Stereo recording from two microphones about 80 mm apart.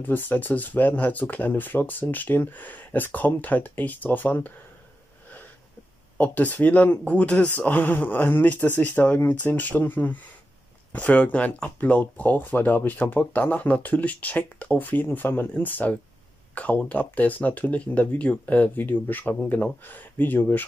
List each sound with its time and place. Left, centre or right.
0.0 s speech: left
6.1 s speech: left